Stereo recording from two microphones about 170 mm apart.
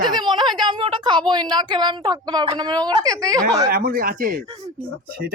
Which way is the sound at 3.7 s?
60° right (ahead or behind).